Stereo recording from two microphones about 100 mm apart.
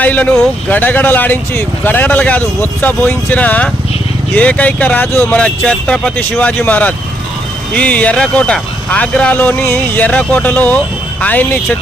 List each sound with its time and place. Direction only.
0.0 s speech: 15° left (ahead or behind)
5.3 s speech: 10° left (ahead or behind)